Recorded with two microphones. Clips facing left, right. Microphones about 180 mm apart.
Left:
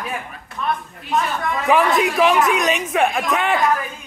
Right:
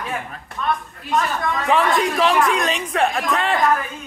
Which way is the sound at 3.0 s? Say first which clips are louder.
Left 1 dB; centre (ahead or behind).